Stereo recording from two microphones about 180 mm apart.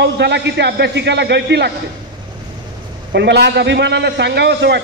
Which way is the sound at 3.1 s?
70° right (ahead or behind).